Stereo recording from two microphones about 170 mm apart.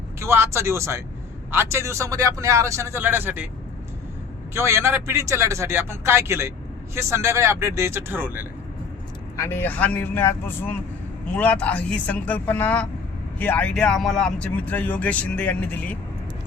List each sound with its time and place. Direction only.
0.2 s a man's voice: 15° right (ahead or behind)
4.5 s a man's voice: 15° right (ahead or behind)
9.3 s speech: 15° left (ahead or behind)